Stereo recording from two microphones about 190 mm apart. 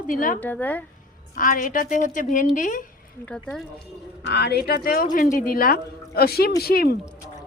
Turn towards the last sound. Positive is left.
turn(degrees=55)  # may be behind; listen again after turning